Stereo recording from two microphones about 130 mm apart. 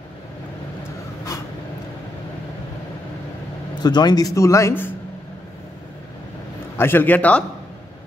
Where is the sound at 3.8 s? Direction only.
30° left (ahead or behind).